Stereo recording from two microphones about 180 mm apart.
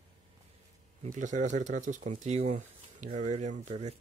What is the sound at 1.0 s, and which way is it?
Speech, 45° right (ahead or behind).